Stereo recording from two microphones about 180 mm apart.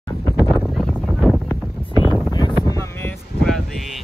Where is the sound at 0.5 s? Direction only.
Centre (ahead or behind).